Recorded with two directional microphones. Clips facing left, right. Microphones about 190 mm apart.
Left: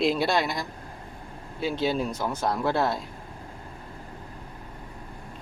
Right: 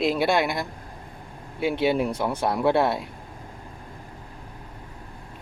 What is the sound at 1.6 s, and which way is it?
Speech, 60° right (ahead or behind).